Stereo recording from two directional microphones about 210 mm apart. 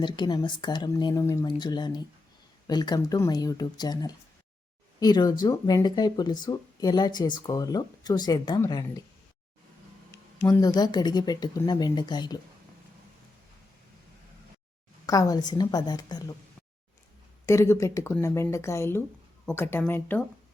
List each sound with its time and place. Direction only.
0.0 s speech: 20° left (ahead or behind)
10.4 s speech: 15° left (ahead or behind)
15.0 s speech: 15° left (ahead or behind)
17.4 s speech: 15° left (ahead or behind)